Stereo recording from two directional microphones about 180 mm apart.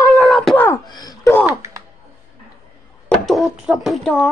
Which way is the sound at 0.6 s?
20° left (ahead or behind).